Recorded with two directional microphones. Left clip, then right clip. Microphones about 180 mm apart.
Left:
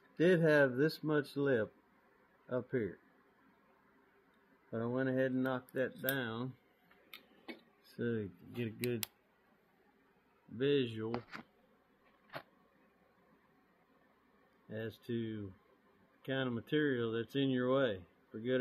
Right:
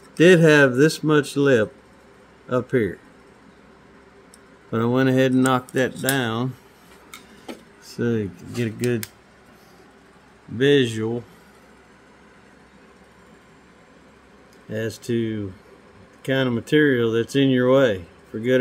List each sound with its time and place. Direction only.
0.2 s speech: 15° right (ahead or behind)
4.6 s speech: 20° right (ahead or behind)
8.0 s speech: 10° right (ahead or behind)
10.6 s speech: 15° right (ahead or behind)
14.7 s speech: 5° right (ahead or behind)